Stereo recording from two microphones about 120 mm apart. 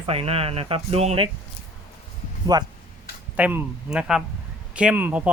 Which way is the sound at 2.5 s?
35° right (ahead or behind).